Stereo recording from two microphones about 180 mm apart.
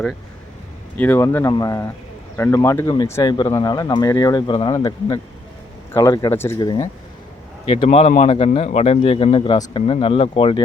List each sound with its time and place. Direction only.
0.9 s speech: 10° left (ahead or behind)
7.8 s speech: 40° left (ahead or behind)